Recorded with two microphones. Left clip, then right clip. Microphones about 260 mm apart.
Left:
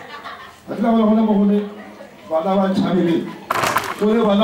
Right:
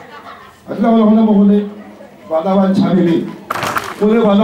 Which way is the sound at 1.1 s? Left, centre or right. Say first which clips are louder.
Right 5 dB; left.